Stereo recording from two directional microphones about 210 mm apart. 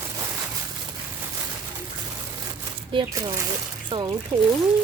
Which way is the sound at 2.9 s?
20° right (ahead or behind).